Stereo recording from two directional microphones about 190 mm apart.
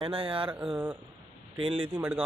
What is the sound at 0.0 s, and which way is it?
Speech, 30° right (ahead or behind).